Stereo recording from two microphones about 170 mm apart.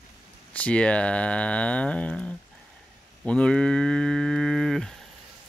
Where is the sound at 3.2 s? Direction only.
5° left (ahead or behind).